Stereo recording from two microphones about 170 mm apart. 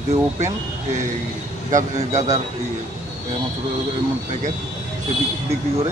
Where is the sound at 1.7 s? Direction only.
45° right (ahead or behind).